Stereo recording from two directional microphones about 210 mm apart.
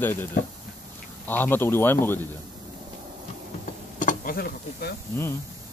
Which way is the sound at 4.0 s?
40° left (ahead or behind).